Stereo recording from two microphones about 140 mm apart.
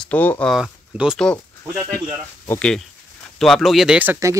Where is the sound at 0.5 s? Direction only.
5° right (ahead or behind).